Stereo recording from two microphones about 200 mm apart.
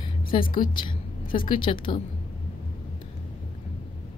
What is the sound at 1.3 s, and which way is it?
Speech, 25° left (ahead or behind).